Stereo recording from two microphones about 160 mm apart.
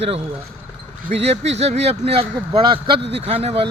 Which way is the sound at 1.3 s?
40° right (ahead or behind).